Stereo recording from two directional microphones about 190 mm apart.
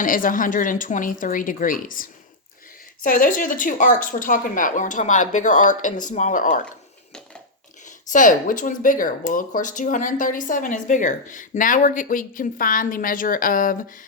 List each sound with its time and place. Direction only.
0.0 s speech: 45° left (ahead or behind)
7.9 s speech: 45° left (ahead or behind)